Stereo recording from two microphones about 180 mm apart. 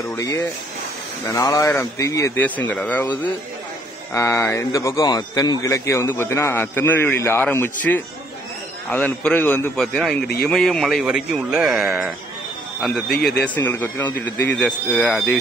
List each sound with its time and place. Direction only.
0.0 s a man's voice: 15° left (ahead or behind); by 11.8 s centre (ahead or behind)
11.8 s speech: 15° right (ahead or behind)
13.6 s a man's voice: 10° left (ahead or behind)